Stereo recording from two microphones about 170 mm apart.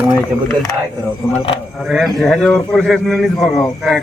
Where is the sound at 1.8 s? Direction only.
Centre (ahead or behind).